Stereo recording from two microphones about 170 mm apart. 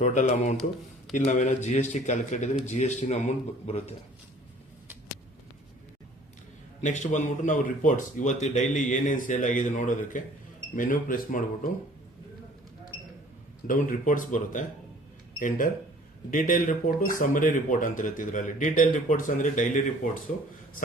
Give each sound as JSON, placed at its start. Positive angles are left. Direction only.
{"t": 0.0, "sound": "a man's voice", "side_deg": 45}
{"t": 6.8, "sound": "speech", "side_deg": 45}
{"t": 13.7, "sound": "speech", "side_deg": 50}